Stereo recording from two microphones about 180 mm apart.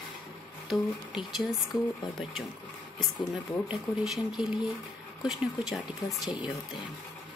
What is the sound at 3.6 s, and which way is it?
Speech, centre (ahead or behind).